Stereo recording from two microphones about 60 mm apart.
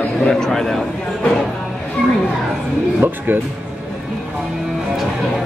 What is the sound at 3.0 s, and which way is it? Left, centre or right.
Speech, right.